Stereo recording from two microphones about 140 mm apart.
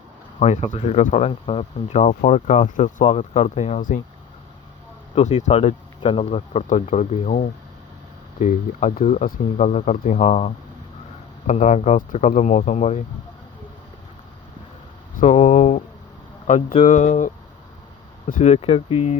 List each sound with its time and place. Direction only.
0.3 s speech: 50° left (ahead or behind); by 4.0 s 70° left (ahead or behind)
5.1 s speech: 55° left (ahead or behind)
15.1 s a sound: 60° left (ahead or behind)
16.5 s speech: 60° left (ahead or behind)